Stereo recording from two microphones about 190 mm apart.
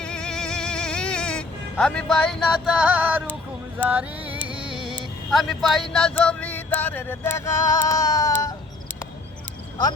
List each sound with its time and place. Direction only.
0.0 s music: 5° left (ahead or behind)
4.3 s music: 25° right (ahead or behind)
4.9 s music: centre (ahead or behind); by 8.5 s 20° left (ahead or behind)